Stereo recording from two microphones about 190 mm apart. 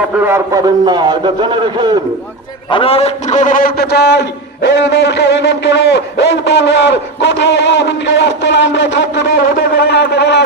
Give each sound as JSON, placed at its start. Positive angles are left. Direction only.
{"t": 0.2, "sound": "a man's voice", "side_deg": -15}
{"t": 2.6, "sound": "a man's voice", "side_deg": 30}
{"t": 9.7, "sound": "shofar", "side_deg": 60}